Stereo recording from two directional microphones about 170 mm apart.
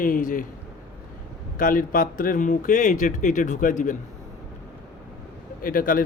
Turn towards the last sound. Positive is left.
turn(degrees=55)  # may be behind; listen again after turning